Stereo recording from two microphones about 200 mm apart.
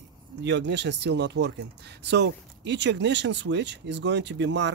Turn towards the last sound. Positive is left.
turn(degrees=-60)  # may be behind; listen again after turning